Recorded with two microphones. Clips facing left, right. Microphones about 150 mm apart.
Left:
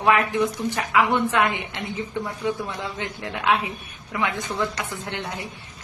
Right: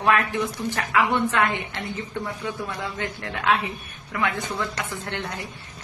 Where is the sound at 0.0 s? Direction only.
15° left (ahead or behind).